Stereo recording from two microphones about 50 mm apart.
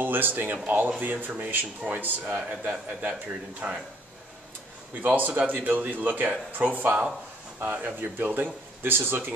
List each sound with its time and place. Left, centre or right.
0.0 s speech: right
3.6 s speech: centre
5.0 s speech: right